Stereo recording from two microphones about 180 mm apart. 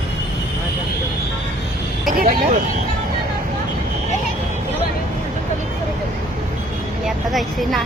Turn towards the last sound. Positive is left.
turn(degrees=0)  # may be behind; listen again after turning